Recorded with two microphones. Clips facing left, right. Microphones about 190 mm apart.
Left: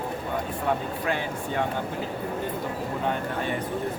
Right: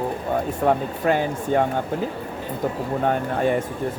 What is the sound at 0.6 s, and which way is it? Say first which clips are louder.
Speech: right 7 dB; 45° right (ahead or behind).